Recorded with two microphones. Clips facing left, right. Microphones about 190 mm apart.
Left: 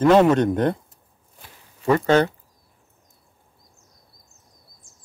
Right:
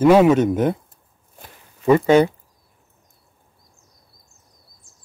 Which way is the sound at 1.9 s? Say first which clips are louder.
Right 4 dB; 10° right (ahead or behind).